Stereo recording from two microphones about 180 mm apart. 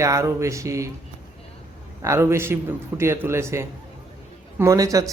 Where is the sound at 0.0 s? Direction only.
15° right (ahead or behind).